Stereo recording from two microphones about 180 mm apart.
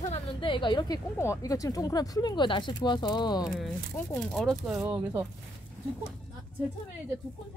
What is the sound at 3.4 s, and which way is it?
Speech, centre (ahead or behind).